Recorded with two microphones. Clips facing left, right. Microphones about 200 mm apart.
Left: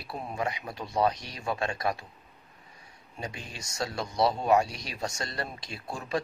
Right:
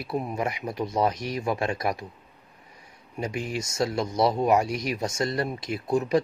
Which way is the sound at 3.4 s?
20° right (ahead or behind).